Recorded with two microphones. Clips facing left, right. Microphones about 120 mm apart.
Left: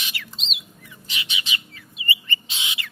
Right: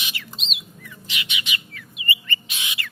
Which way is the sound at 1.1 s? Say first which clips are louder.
Even; 30° left (ahead or behind).